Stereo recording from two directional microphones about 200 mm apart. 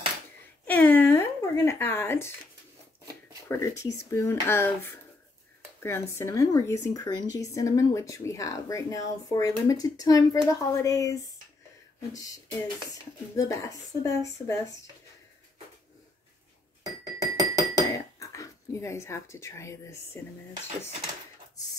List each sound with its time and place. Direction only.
0.7 s a sound: 10° left (ahead or behind)
3.4 s speech: 15° left (ahead or behind)
13.4 s speech: 15° left (ahead or behind)
16.8 s music: 20° right (ahead or behind)
17.8 s dishes: 15° left (ahead or behind)